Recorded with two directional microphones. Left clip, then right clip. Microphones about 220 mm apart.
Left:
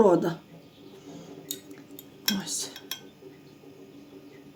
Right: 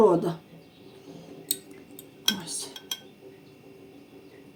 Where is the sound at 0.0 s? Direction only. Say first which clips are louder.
Even; 30° left (ahead or behind).